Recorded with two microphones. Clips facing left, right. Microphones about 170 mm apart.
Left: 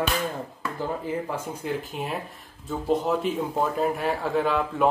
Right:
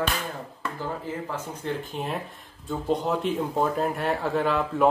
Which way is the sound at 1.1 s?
15° left (ahead or behind).